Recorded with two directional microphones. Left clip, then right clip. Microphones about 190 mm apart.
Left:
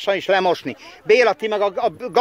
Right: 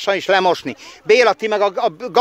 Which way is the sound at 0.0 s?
25° right (ahead or behind).